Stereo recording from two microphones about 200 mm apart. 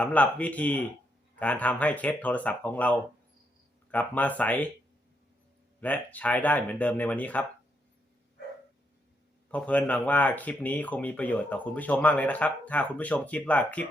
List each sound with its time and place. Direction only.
0.0 s speech: 5° left (ahead or behind)
5.8 s speech: 10° left (ahead or behind)
9.5 s speech: 5° left (ahead or behind)